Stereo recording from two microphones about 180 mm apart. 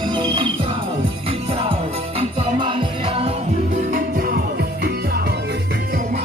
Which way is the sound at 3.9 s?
55° right (ahead or behind).